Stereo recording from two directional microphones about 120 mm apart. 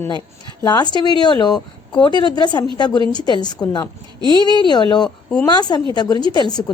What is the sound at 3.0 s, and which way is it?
Speech, 40° right (ahead or behind).